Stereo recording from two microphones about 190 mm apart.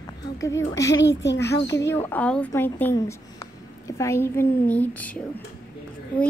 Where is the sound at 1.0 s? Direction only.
70° left (ahead or behind).